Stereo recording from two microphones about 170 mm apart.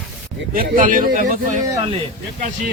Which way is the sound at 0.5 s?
50° right (ahead or behind).